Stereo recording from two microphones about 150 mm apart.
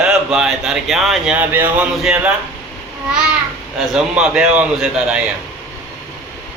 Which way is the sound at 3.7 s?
5° right (ahead or behind).